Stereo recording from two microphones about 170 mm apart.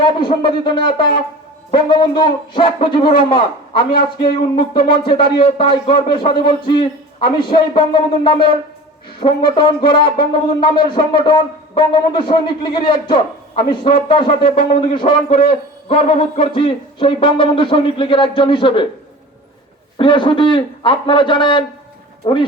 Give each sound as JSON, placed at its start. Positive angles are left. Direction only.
{"t": 0.0, "sound": "a man's voice", "side_deg": 30}
{"t": 20.0, "sound": "speech", "side_deg": 30}